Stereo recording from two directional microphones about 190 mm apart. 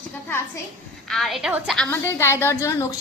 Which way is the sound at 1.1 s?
Centre (ahead or behind).